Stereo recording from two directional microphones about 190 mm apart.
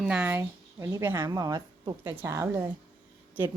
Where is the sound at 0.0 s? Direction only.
5° right (ahead or behind).